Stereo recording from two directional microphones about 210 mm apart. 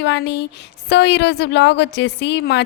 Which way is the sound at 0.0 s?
55° left (ahead or behind).